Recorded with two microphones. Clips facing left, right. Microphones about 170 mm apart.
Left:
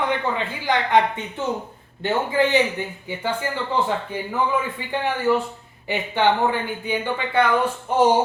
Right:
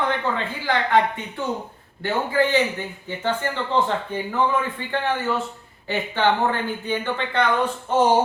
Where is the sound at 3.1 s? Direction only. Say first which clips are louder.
Right 2 dB; 10° left (ahead or behind).